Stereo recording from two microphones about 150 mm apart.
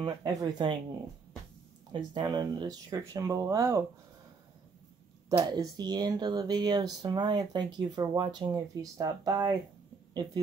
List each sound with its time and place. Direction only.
0.0 s speech: 25° right (ahead or behind)
1.9 s speech: 30° right (ahead or behind)
5.3 s speech: 25° right (ahead or behind)